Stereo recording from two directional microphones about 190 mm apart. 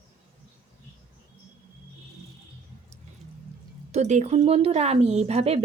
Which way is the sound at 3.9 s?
35° right (ahead or behind).